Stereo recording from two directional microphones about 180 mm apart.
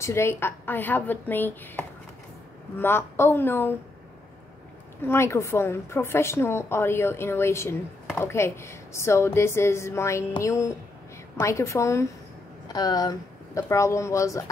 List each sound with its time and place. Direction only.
0.0 s a woman's voice: 15° left (ahead or behind)
5.0 s a woman's voice: 15° left (ahead or behind)